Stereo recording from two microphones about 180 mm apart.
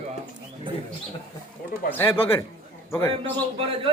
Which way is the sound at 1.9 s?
15° left (ahead or behind).